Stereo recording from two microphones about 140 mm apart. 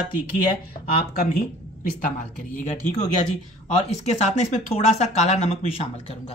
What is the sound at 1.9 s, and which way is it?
Speech, 70° left (ahead or behind).